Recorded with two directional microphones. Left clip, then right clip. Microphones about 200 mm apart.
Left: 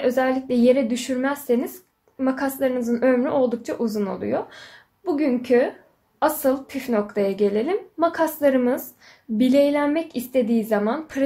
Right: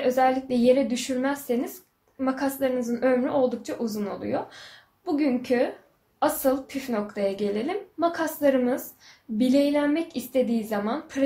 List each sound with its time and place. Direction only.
0.0 s a woman's voice: 55° left (ahead or behind)